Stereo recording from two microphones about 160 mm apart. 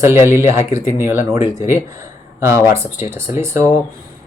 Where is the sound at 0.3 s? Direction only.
15° right (ahead or behind).